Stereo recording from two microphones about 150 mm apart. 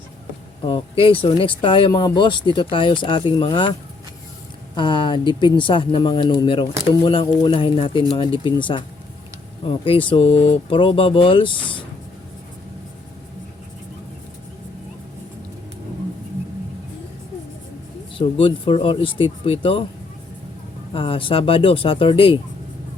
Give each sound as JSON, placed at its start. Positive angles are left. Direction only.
{"t": 0.6, "sound": "speech", "side_deg": 40}
{"t": 18.2, "sound": "speech", "side_deg": 35}
{"t": 20.9, "sound": "speech", "side_deg": 35}